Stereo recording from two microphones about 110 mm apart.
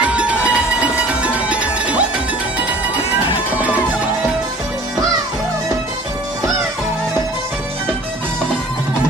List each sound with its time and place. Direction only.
0.0 s a sound: 10° right (ahead or behind)
1.2 s music: 10° right (ahead or behind)
3.5 s music: 15° right (ahead or behind)